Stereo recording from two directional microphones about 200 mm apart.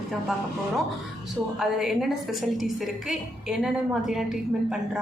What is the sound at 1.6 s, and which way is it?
A woman's voice, centre (ahead or behind).